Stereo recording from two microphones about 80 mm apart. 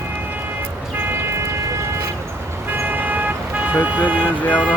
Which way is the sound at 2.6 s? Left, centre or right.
Right.